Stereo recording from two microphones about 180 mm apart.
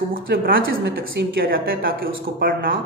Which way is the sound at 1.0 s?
65° right (ahead or behind).